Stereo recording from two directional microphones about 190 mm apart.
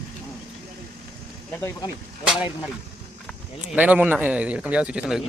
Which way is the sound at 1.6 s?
20° left (ahead or behind).